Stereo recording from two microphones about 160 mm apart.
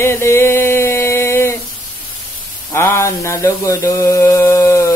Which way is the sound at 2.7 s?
15° left (ahead or behind).